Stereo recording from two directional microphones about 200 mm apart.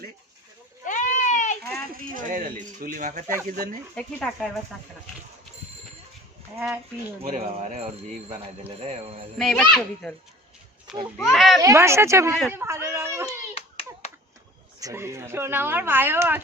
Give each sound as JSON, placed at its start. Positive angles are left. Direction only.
{"t": 0.9, "sound": "goat", "side_deg": 40}
{"t": 2.0, "sound": "speech", "side_deg": -45}
{"t": 3.9, "sound": "speech", "side_deg": 5}
{"t": 7.2, "sound": "speech", "side_deg": -30}
{"t": 9.4, "sound": "speech", "side_deg": 0}
{"t": 11.6, "sound": "speech", "side_deg": -15}
{"t": 13.5, "sound": "hands", "side_deg": 30}
{"t": 14.8, "sound": "speech", "side_deg": -15}